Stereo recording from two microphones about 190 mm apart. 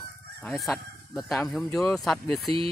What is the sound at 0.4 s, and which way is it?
Speech, centre (ahead or behind).